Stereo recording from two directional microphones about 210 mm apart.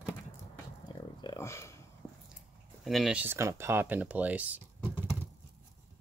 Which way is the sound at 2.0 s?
Centre (ahead or behind).